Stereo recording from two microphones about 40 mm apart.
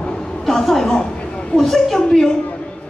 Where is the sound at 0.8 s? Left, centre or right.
Left.